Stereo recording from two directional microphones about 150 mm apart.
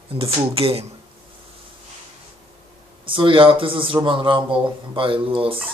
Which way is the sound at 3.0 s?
35° right (ahead or behind).